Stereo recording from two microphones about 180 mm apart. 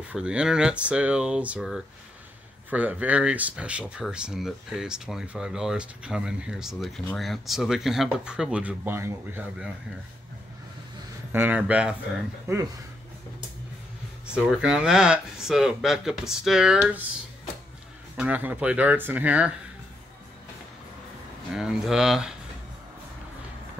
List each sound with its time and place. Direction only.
0.1 s speech: 5° right (ahead or behind)
11.3 s speech: 10° right (ahead or behind)
14.2 s speech: 5° right (ahead or behind)
18.1 s speech: 10° right (ahead or behind)
21.5 s speech: 5° right (ahead or behind)